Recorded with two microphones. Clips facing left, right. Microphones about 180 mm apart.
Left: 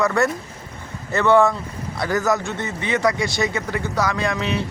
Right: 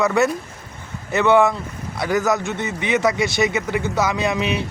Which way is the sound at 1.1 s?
20° right (ahead or behind).